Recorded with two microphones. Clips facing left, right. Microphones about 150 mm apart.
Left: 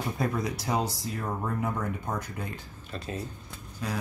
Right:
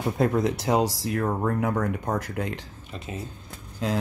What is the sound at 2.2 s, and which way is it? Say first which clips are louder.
Speech: right 6 dB; 85° right.